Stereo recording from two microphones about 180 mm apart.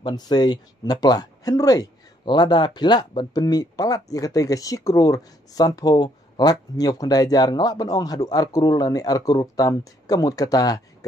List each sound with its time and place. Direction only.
0.0 s speech: 25° left (ahead or behind)